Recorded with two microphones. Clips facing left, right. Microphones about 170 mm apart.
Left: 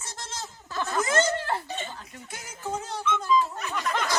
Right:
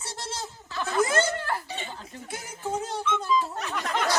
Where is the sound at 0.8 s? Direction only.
10° right (ahead or behind).